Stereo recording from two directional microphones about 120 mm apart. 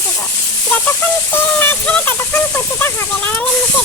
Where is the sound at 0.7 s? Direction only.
15° left (ahead or behind).